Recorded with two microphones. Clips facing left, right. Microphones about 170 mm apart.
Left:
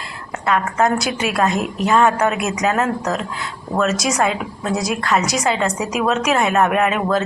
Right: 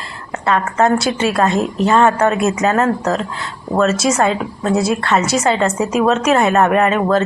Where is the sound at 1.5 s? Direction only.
30° right (ahead or behind).